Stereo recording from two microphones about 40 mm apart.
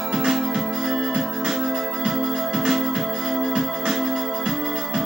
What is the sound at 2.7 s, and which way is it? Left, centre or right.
Organ, centre.